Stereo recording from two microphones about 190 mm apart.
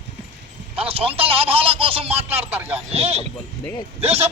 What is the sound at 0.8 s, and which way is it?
A man's voice, 30° right (ahead or behind).